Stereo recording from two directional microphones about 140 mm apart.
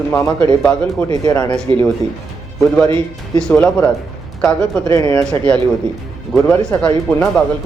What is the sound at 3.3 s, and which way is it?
Speech, 5° left (ahead or behind).